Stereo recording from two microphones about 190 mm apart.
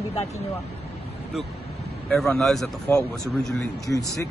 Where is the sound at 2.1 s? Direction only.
Centre (ahead or behind).